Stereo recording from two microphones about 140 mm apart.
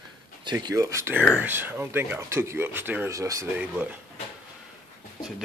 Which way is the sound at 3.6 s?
10° right (ahead or behind).